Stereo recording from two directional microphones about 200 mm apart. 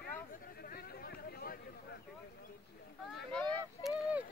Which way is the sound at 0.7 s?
50° left (ahead or behind).